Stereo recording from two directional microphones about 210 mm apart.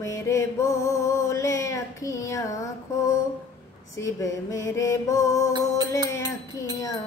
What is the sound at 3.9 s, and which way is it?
Music, 15° left (ahead or behind).